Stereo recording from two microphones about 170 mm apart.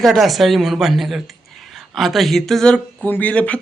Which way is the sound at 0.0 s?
Centre (ahead or behind).